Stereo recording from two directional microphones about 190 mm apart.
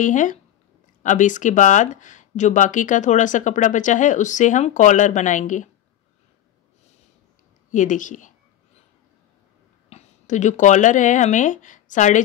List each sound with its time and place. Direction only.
0.0 s speech: 40° left (ahead or behind)
7.7 s speech: 40° left (ahead or behind)
9.8 s speech: 35° left (ahead or behind)